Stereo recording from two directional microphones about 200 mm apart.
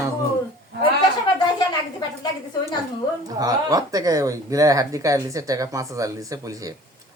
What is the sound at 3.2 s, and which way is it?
Speech, 20° right (ahead or behind).